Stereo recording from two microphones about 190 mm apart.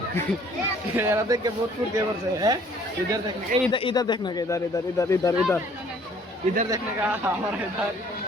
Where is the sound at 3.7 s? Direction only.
25° left (ahead or behind).